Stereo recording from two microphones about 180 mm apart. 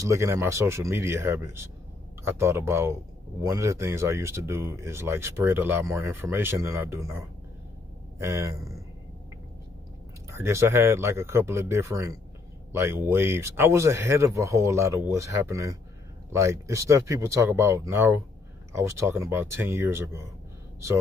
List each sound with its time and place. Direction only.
0.0 s speech: 15° right (ahead or behind)
8.2 s speech: 15° right (ahead or behind)
10.3 s speech: 15° right (ahead or behind)